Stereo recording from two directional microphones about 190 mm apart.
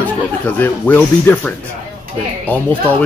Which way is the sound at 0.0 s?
10° left (ahead or behind).